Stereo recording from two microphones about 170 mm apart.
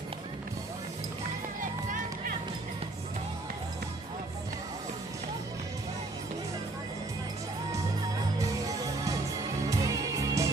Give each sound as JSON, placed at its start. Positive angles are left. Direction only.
{"t": 1.6, "sound": "music", "side_deg": -50}
{"t": 8.4, "sound": "music", "side_deg": -20}